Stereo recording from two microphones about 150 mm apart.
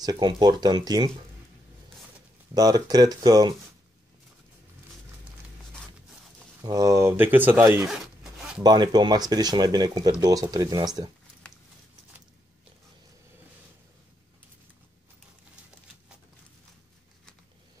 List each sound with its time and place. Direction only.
0.0 s speech: 30° right (ahead or behind)
2.5 s speech: 25° right (ahead or behind)
6.6 s speech: 25° right (ahead or behind)
7.9 s zipper: centre (ahead or behind)
8.6 s speech: 30° right (ahead or behind)